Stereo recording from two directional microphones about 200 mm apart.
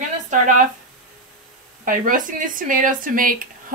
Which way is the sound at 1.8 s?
45° right (ahead or behind).